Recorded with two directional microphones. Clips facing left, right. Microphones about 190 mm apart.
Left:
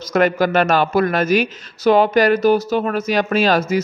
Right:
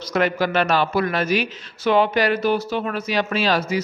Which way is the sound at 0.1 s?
45° left (ahead or behind).